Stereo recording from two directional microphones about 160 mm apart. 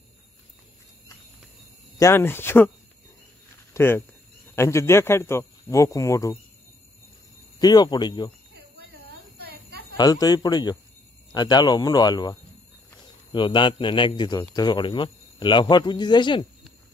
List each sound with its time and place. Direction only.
2.0 s speech: 15° left (ahead or behind)
3.7 s speech: 15° left (ahead or behind)
7.5 s speech: 25° left (ahead or behind)
9.4 s a sound: 80° right
9.9 s speech: 25° left (ahead or behind)